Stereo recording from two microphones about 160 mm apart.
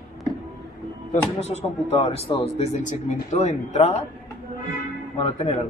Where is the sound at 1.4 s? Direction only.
40° left (ahead or behind).